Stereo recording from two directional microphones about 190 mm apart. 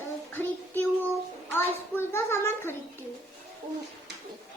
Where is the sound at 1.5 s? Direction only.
10° left (ahead or behind).